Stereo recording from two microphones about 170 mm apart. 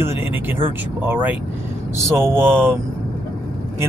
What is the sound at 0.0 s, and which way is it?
Vehicle, 15° right (ahead or behind).